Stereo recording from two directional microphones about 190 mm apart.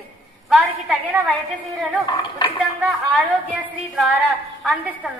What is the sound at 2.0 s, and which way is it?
Speech, 20° left (ahead or behind).